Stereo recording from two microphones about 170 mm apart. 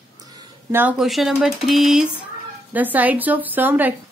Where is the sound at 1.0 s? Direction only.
Centre (ahead or behind).